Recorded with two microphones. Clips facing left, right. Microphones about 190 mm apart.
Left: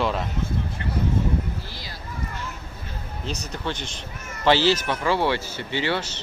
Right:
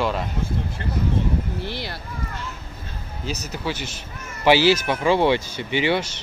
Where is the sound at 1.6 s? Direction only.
65° right (ahead or behind).